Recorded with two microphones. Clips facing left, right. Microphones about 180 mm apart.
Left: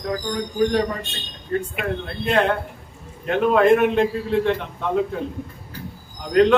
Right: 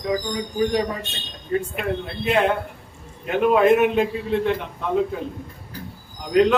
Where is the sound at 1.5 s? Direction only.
5° right (ahead or behind).